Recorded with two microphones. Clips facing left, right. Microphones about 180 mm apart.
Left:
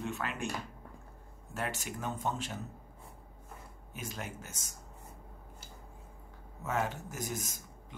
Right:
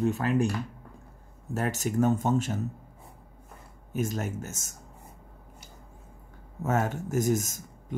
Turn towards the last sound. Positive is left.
turn(degrees=-45)  # may be behind; listen again after turning